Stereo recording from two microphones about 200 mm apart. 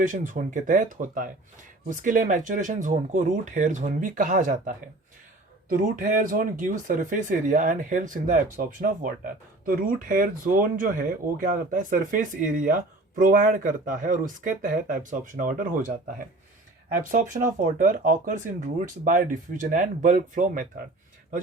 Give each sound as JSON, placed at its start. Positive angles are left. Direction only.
{"t": 0.0, "sound": "speech", "side_deg": -40}